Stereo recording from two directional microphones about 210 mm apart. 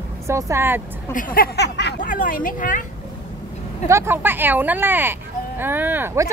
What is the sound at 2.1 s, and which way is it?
Speech, 40° left (ahead or behind).